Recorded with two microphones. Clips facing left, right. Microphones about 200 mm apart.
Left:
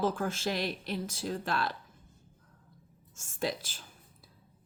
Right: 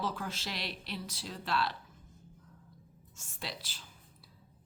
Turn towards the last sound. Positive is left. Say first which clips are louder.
# left 10 dB
turn(degrees=50)  # may be behind; listen again after turning